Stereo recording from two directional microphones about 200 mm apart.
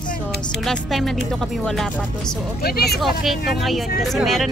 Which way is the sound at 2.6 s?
50° left (ahead or behind).